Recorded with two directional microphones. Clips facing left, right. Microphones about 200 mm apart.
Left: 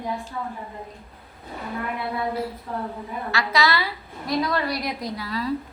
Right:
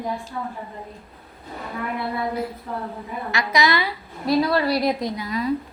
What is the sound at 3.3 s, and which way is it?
Speech, 15° right (ahead or behind).